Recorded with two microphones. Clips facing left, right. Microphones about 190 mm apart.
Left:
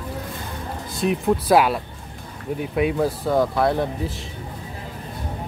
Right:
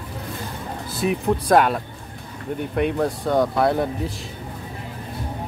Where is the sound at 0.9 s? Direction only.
Centre (ahead or behind).